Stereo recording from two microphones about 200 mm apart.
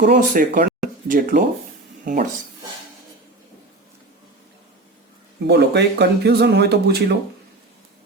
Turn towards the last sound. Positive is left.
turn(degrees=-55)  # may be behind; listen again after turning